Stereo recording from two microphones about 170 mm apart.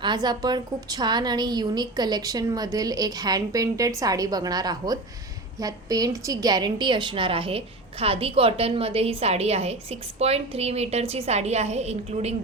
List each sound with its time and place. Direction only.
0.0 s a woman's voice: 25° right (ahead or behind)